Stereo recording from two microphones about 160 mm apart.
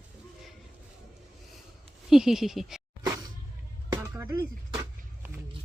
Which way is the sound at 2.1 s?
Centre (ahead or behind).